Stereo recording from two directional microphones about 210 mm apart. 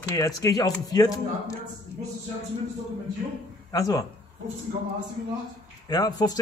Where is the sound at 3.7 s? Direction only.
15° left (ahead or behind).